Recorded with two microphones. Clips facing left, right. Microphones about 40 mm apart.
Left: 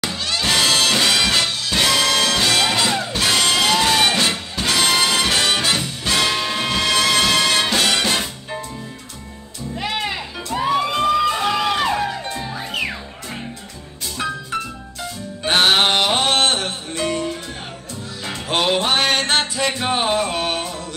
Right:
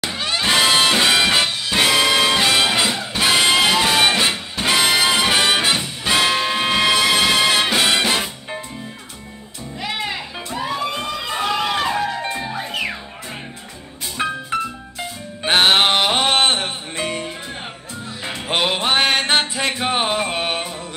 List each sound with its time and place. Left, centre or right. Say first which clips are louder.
0.1 s music: right 3 dB; right
9.8 s music: left 1 dB; centre
11.4 s music: left 1 dB; centre
12.2 s music: right 3 dB; centre
14.1 s music: right 2 dB; right